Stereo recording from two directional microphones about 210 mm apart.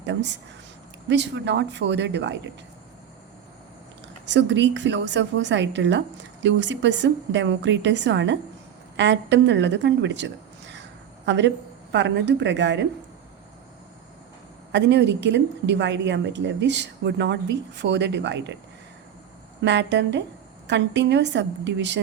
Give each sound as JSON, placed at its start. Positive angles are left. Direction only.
{"t": 0.0, "sound": "a woman's voice", "side_deg": -55}
{"t": 4.3, "sound": "a woman's voice", "side_deg": -60}
{"t": 14.7, "sound": "a woman's voice", "side_deg": -55}
{"t": 19.6, "sound": "a woman's voice", "side_deg": -55}